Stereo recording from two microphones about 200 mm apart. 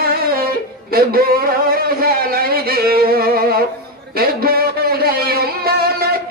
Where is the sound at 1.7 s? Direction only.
50° right (ahead or behind).